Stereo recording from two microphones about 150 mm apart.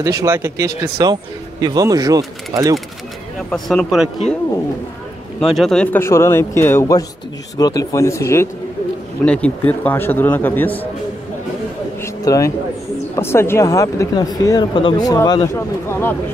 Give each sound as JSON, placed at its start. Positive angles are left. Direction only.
{"t": 0.0, "sound": "speech", "side_deg": -20}
{"t": 3.4, "sound": "speech", "side_deg": 5}
{"t": 5.4, "sound": "a man's voice", "side_deg": 0}
{"t": 12.0, "sound": "a sound", "side_deg": 20}
{"t": 13.1, "sound": "a man's voice", "side_deg": 15}